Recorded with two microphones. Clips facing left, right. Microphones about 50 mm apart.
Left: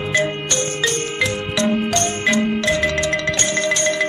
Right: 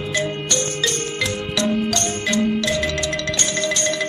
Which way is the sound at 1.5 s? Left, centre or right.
Left.